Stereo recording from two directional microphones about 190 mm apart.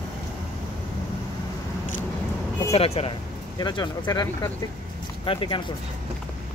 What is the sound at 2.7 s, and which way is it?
Speech, 30° left (ahead or behind).